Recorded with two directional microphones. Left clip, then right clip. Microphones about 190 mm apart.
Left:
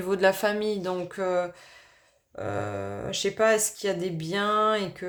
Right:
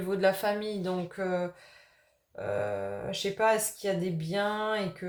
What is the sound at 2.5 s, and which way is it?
Speech, 45° left (ahead or behind).